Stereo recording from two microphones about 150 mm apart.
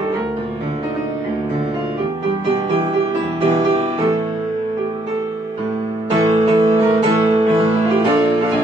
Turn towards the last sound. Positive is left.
turn(degrees=-30)  # may be behind; listen again after turning